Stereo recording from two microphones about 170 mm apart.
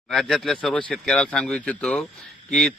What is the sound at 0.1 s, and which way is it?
A man's voice, centre (ahead or behind).